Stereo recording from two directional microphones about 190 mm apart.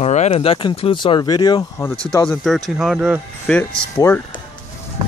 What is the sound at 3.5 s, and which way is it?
Speech, 5° left (ahead or behind).